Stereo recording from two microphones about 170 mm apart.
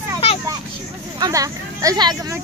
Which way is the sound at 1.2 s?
20° right (ahead or behind).